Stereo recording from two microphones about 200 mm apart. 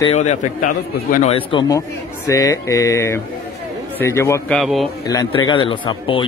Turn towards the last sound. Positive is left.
turn(degrees=25)  # may be behind; listen again after turning